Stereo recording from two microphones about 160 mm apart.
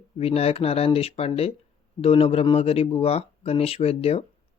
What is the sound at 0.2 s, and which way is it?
Speech, 40° left (ahead or behind).